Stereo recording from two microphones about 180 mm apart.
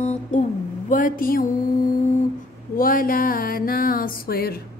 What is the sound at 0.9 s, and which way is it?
Music, 50° left (ahead or behind).